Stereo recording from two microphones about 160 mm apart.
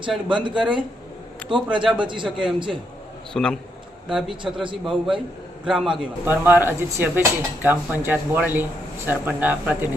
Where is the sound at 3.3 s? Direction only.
5° left (ahead or behind).